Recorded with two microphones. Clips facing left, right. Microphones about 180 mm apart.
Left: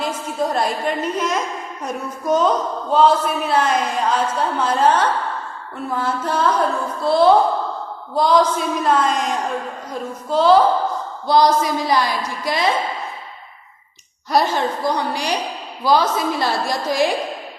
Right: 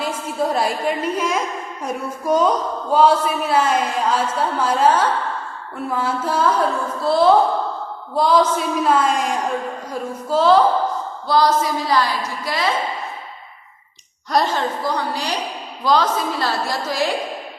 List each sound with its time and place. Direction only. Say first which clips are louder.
0.0 s a woman's voice: even; 5° right (ahead or behind)
11.3 s a woman's voice: left 2 dB; 15° left (ahead or behind)
14.3 s a woman's voice: left 1 dB; 10° left (ahead or behind)